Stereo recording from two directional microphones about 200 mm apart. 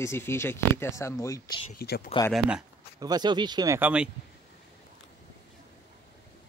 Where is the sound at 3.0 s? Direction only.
20° right (ahead or behind).